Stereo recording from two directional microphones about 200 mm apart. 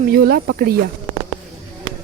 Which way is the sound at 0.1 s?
50° right (ahead or behind).